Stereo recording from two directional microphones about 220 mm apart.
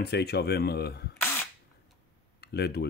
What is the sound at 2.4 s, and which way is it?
Speech, 45° left (ahead or behind).